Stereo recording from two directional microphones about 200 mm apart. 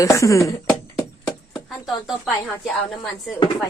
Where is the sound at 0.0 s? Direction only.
15° left (ahead or behind).